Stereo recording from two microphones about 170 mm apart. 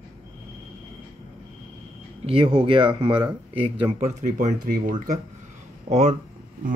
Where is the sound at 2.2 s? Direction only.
30° right (ahead or behind).